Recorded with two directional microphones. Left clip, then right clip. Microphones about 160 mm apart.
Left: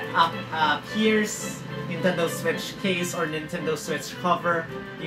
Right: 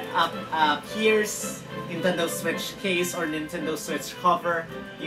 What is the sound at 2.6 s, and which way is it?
A woman's voice, 15° right (ahead or behind).